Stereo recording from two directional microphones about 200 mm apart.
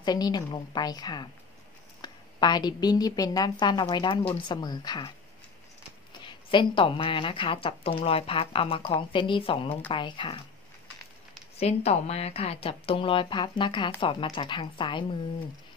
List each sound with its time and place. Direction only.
0.0 s a woman's voice: 20° left (ahead or behind)
6.2 s speech: 25° left (ahead or behind)
11.5 s speech: 30° left (ahead or behind)